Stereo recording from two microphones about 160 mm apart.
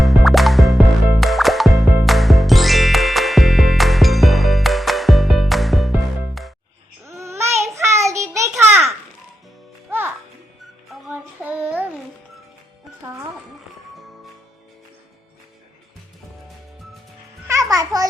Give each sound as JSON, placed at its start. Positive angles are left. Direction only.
{"t": 0.0, "sound": "music", "side_deg": 0}
{"t": 7.0, "sound": "babbling", "side_deg": -15}
{"t": 7.8, "sound": "child singing", "side_deg": -20}
{"t": 10.9, "sound": "child singing", "side_deg": -5}
{"t": 17.5, "sound": "music", "side_deg": -20}